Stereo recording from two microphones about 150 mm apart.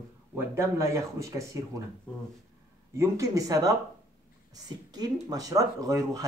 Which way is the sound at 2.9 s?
20° right (ahead or behind).